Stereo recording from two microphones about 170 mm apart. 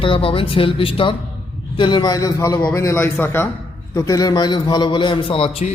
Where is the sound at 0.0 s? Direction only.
30° left (ahead or behind).